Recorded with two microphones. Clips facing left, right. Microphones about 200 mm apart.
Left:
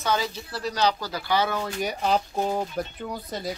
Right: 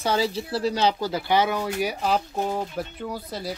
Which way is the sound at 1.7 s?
5° right (ahead or behind).